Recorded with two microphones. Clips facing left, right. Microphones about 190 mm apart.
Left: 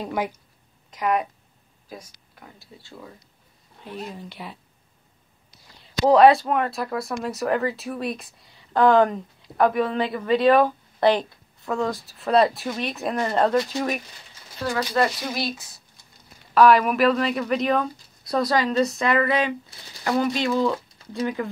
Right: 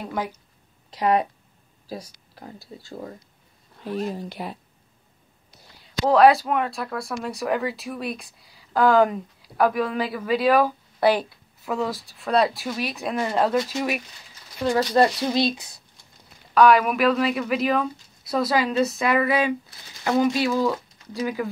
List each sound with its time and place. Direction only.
0.0 s speech: 10° left (ahead or behind)
0.8 s speech: 30° right (ahead or behind)
5.8 s speech: centre (ahead or behind)
16.5 s speech: centre (ahead or behind)